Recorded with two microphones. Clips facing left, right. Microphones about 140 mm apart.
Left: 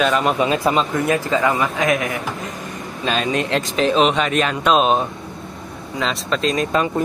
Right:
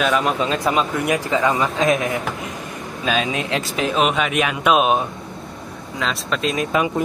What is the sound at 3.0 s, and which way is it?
Speech, 5° right (ahead or behind).